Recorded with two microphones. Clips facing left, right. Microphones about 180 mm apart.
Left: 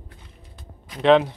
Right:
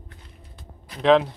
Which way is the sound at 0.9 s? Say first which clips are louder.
Left 1 dB; centre (ahead or behind).